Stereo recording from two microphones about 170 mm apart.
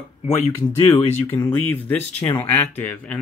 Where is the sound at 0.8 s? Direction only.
15° left (ahead or behind).